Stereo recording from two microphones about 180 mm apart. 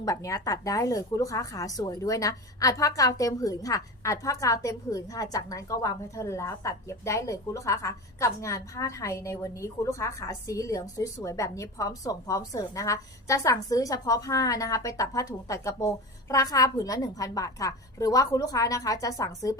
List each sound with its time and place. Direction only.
0.0 s speech: 20° left (ahead or behind)